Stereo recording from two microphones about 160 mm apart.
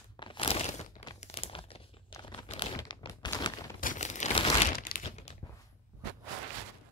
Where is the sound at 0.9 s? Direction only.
25° left (ahead or behind).